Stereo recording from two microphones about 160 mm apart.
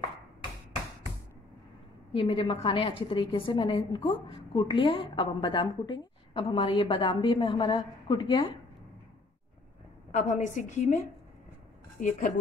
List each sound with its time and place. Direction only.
2.1 s a woman's voice: 35° left (ahead or behind)
10.1 s a woman's voice: 50° left (ahead or behind)